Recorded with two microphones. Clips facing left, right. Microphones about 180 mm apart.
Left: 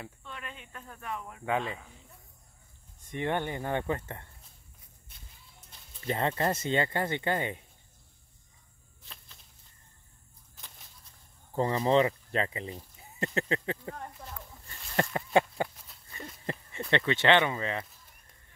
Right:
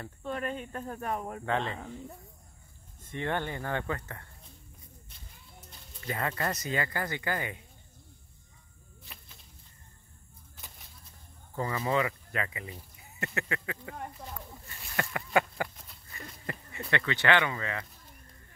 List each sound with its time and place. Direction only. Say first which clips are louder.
0.2 s speech: right 11 dB; 45° right (ahead or behind)
1.4 s speech: left 2 dB; 10° left (ahead or behind)
3.1 s speech: left 2 dB; 15° left (ahead or behind)
6.0 s speech: left 4 dB; 25° left (ahead or behind)
11.5 s speech: left 5 dB; 30° left (ahead or behind)
14.1 s speech: right 2 dB; centre (ahead or behind)
15.0 s a sound: left 3 dB; 25° left (ahead or behind)
16.9 s speech: left 3 dB; 25° left (ahead or behind)